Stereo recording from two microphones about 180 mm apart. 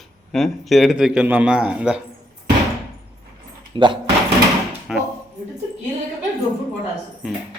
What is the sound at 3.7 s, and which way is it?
Speech, 25° right (ahead or behind).